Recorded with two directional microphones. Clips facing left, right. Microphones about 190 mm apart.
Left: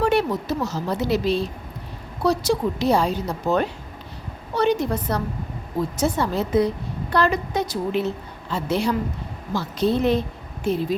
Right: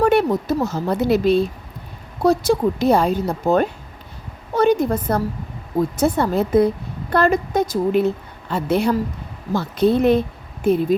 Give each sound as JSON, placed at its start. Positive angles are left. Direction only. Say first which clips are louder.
{"t": 0.0, "sound": "a woman's voice", "louder": "right 4 dB", "side_deg": -50}